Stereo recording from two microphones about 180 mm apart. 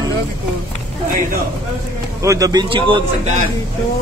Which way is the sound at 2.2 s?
20° right (ahead or behind).